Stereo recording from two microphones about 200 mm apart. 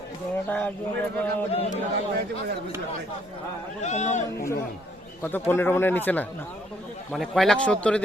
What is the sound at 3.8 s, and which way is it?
Speech, 35° left (ahead or behind).